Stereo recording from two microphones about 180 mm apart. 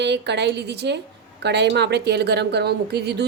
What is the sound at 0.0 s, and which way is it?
Speech, 70° right (ahead or behind).